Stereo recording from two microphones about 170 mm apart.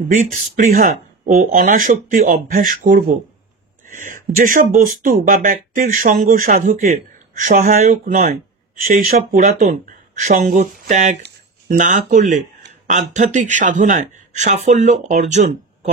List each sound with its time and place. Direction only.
0.1 s speech: 50° right (ahead or behind)